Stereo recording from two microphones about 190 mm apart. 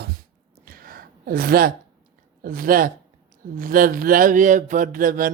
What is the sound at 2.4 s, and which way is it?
Mantra, 50° right (ahead or behind).